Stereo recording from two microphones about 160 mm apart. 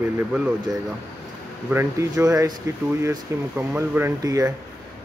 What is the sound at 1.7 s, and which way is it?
Speech, 15° right (ahead or behind).